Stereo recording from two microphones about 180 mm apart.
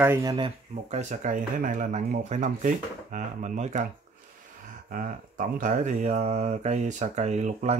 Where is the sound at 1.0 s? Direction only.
45° right (ahead or behind).